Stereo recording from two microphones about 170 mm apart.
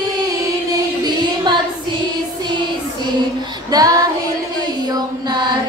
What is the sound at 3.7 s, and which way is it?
Female singing, 20° right (ahead or behind).